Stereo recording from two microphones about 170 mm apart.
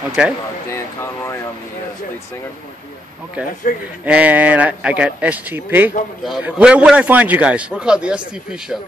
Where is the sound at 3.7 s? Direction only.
55° left (ahead or behind).